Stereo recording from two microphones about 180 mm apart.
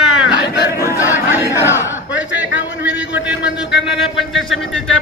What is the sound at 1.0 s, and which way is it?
Chatter, 10° right (ahead or behind).